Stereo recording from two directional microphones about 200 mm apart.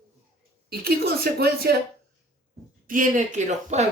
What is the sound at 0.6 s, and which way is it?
Speech, 50° right (ahead or behind).